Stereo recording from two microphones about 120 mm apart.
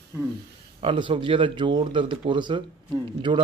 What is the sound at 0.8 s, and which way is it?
Speech, 45° right (ahead or behind).